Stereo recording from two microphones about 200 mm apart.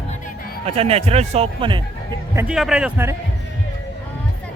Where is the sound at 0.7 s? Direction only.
30° right (ahead or behind).